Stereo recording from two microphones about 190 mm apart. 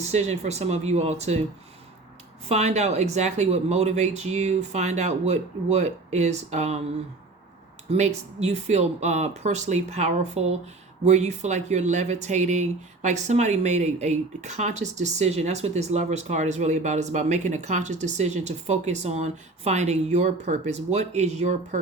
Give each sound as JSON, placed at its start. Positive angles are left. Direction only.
{"t": 0.1, "sound": "speech", "side_deg": -35}
{"t": 2.5, "sound": "speech", "side_deg": -35}
{"t": 7.9, "sound": "speech", "side_deg": -35}